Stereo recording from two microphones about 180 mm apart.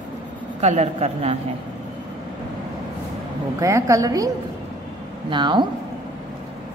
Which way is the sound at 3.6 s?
20° right (ahead or behind).